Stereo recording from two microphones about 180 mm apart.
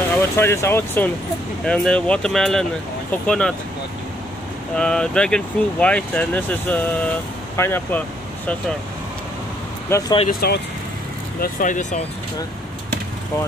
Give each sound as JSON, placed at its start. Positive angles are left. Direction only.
{"t": 0.4, "sound": "speech", "side_deg": 15}
{"t": 4.7, "sound": "speech", "side_deg": 5}
{"t": 9.8, "sound": "speech", "side_deg": 15}
{"t": 10.4, "sound": "speech", "side_deg": 60}
{"t": 11.4, "sound": "speech", "side_deg": 45}